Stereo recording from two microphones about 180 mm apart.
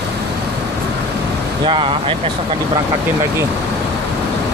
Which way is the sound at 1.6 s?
30° right (ahead or behind).